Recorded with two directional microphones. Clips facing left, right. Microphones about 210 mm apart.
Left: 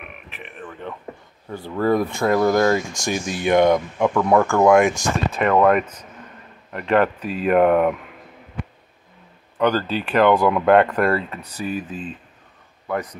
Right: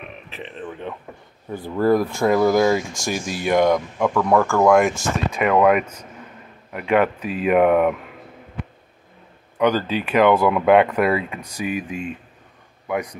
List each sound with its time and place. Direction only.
0.4 s speech: 25° right (ahead or behind)
1.7 s speech: 5° right (ahead or behind)
9.6 s speech: 10° right (ahead or behind)